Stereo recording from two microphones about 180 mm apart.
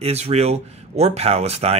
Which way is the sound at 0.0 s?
35° right (ahead or behind).